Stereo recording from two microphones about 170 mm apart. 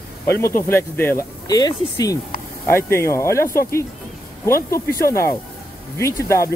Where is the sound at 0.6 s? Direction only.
15° left (ahead or behind).